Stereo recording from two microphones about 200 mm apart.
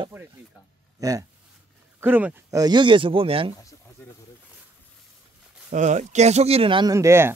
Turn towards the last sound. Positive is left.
turn(degrees=-10)  # may be behind; listen again after turning